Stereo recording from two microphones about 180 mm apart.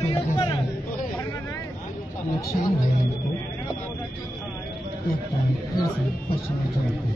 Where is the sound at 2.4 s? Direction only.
60° left (ahead or behind).